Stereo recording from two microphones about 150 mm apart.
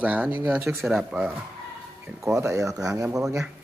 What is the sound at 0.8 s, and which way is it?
Speech, 5° right (ahead or behind).